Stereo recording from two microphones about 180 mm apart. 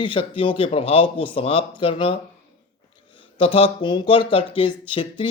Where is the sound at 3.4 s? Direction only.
30° left (ahead or behind).